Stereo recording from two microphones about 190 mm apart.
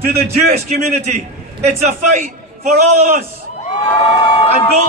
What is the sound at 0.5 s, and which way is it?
A man's voice, 35° right (ahead or behind).